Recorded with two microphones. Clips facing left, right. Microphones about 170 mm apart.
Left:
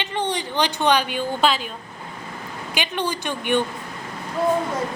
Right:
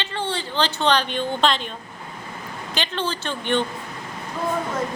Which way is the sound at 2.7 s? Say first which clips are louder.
Left 1 dB; 15° left (ahead or behind).